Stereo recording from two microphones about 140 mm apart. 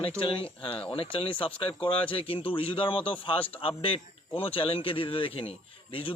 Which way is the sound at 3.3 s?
10° left (ahead or behind).